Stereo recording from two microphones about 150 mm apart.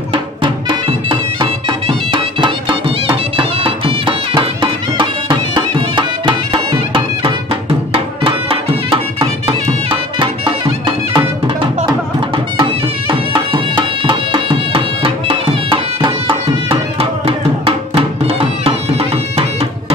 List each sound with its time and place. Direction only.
0.1 s music: 35° right (ahead or behind)
13.1 s music: 35° right (ahead or behind)